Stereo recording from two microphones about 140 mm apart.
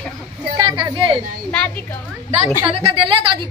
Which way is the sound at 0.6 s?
35° right (ahead or behind).